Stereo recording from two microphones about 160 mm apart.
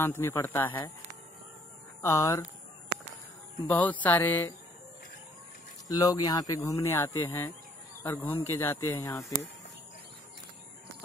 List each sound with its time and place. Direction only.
0.0 s a man's voice: 15° left (ahead or behind)
2.0 s speech: 20° left (ahead or behind)
3.8 s a man's voice: 10° left (ahead or behind)
5.9 s a man's voice: 20° left (ahead or behind)